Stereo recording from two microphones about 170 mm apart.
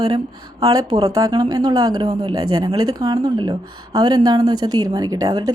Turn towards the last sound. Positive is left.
turn(degrees=-20)  # may be behind; listen again after turning